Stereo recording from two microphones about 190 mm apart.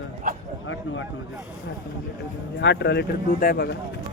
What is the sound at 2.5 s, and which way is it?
Speech, 65° left (ahead or behind).